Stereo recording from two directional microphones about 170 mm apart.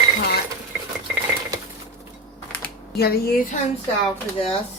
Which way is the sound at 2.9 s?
65° left (ahead or behind).